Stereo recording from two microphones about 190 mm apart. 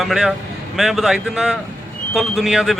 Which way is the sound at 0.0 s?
Centre (ahead or behind).